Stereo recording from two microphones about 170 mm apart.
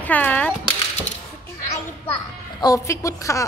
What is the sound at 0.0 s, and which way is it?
Speech, 10° left (ahead or behind).